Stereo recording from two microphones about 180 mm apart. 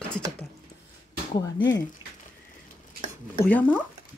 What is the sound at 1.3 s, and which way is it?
Speech, 25° left (ahead or behind).